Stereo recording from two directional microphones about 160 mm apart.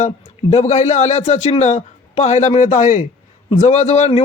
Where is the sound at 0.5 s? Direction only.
45° left (ahead or behind).